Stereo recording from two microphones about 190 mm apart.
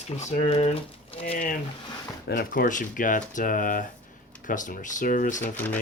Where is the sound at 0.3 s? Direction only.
35° left (ahead or behind).